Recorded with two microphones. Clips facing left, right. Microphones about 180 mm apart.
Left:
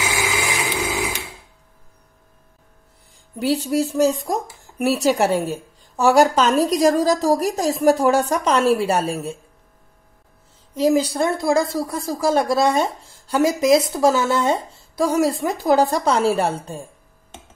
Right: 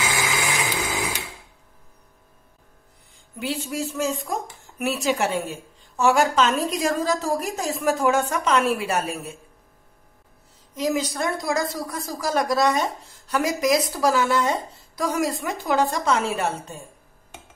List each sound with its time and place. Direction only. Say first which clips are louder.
0.0 s a sound: left 2 dB; 10° left (ahead or behind)
3.3 s a woman's voice: left 8 dB; 35° left (ahead or behind)
10.7 s speech: left 7 dB; 30° left (ahead or behind)